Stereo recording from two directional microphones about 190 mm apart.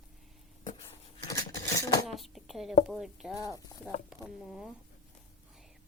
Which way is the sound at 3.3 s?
20° left (ahead or behind).